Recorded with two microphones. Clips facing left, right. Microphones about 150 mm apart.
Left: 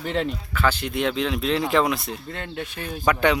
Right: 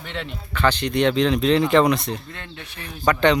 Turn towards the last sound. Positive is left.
turn(degrees=10)  # may be behind; listen again after turning